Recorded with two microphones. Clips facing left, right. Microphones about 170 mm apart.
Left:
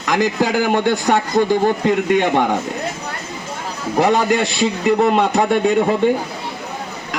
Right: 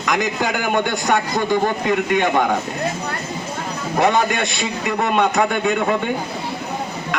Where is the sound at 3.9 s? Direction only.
35° left (ahead or behind).